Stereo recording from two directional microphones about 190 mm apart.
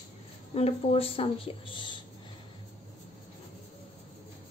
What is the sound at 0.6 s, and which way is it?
A woman's voice, 30° left (ahead or behind).